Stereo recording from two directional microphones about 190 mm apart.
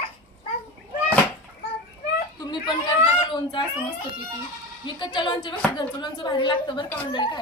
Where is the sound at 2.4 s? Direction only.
25° left (ahead or behind).